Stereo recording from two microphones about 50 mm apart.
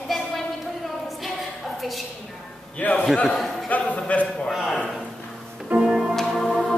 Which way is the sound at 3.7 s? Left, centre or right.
Left.